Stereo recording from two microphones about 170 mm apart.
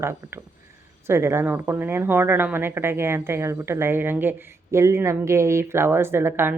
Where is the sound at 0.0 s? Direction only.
15° right (ahead or behind).